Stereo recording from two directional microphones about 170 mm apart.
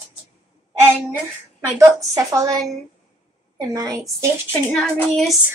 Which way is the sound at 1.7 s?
20° right (ahead or behind).